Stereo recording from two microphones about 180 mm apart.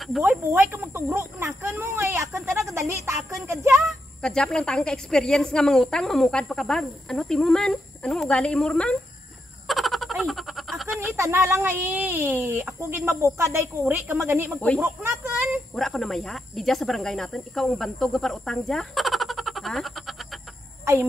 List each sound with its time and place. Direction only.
0.2 s speech: 10° right (ahead or behind)
3.8 s speech: 5° left (ahead or behind)
9.7 s a sound: centre (ahead or behind)
11.0 s speech: 15° right (ahead or behind)
15.7 s speech: centre (ahead or behind)
20.8 s speech: 15° right (ahead or behind)